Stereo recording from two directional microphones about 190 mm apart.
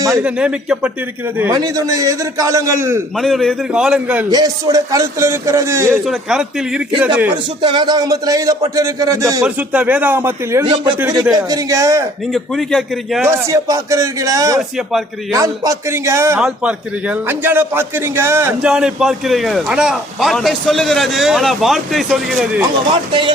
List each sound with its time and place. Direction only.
0.2 s a man's voice: 5° right (ahead or behind)
1.4 s a man's voice: 20° right (ahead or behind)
3.2 s a man's voice: centre (ahead or behind)
4.3 s a man's voice: 20° right (ahead or behind)
5.9 s a man's voice: centre (ahead or behind)
7.6 s a man's voice: 25° right (ahead or behind)
12.3 s a man's voice: centre (ahead or behind)
13.2 s a man's voice: 15° right (ahead or behind)
18.7 s a man's voice: 5° right (ahead or behind)